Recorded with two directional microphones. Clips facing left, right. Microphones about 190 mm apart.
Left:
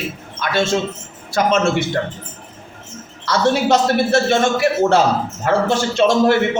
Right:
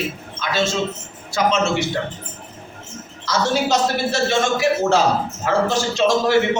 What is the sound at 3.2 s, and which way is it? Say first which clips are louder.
A man's voice: left 4 dB; 60° left (ahead or behind).